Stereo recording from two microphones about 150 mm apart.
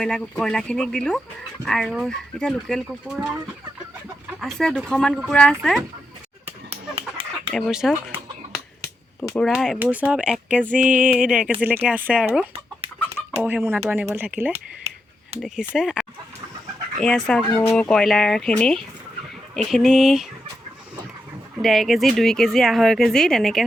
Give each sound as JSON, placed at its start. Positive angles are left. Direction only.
{"t": 0.0, "sound": "speech", "side_deg": 5}
{"t": 4.4, "sound": "speech", "side_deg": 0}
{"t": 6.7, "sound": "chicken", "side_deg": -45}
{"t": 7.5, "sound": "speech", "side_deg": 0}
{"t": 9.5, "sound": "music", "side_deg": -5}
{"t": 14.5, "sound": "a sound", "side_deg": -45}
{"t": 15.4, "sound": "speech", "side_deg": 0}
{"t": 21.6, "sound": "speech", "side_deg": 0}